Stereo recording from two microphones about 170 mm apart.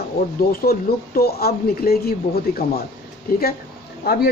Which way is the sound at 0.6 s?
65° left (ahead or behind).